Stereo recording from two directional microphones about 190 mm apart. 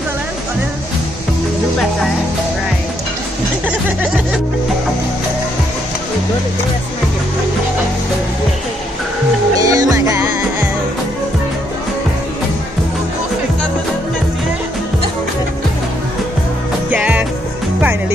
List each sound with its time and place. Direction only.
9.6 s music: 20° right (ahead or behind)
16.9 s music: 5° right (ahead or behind)